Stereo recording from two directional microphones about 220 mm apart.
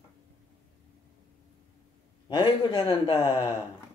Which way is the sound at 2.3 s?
20° left (ahead or behind).